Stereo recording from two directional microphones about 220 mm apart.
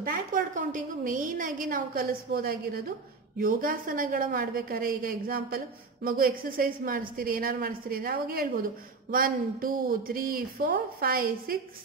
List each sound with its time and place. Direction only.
0.0 s a woman's voice: 35° right (ahead or behind)